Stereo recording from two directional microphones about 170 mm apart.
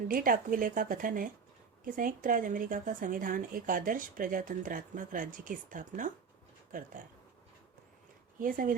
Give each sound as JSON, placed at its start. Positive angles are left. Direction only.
{"t": 0.1, "sound": "a woman's voice", "side_deg": -55}
{"t": 8.4, "sound": "a woman's voice", "side_deg": -55}